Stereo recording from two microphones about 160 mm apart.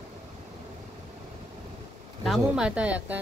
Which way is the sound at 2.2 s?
Centre (ahead or behind).